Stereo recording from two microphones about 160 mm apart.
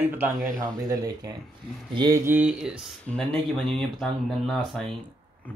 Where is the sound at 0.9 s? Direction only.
20° right (ahead or behind).